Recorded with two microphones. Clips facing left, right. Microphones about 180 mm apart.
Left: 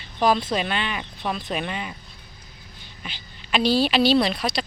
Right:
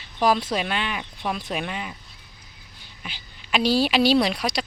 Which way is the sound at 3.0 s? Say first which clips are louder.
Even; 10° right (ahead or behind).